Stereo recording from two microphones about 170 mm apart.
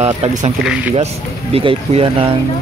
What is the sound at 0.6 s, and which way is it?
Speech, 5° right (ahead or behind).